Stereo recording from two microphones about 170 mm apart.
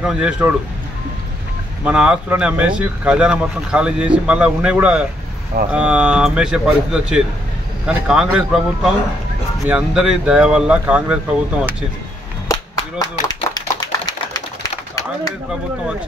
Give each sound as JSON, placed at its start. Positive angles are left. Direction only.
{"t": 0.0, "sound": "speech", "side_deg": -5}
{"t": 1.9, "sound": "speech", "side_deg": -5}
{"t": 12.4, "sound": "clapping", "side_deg": 25}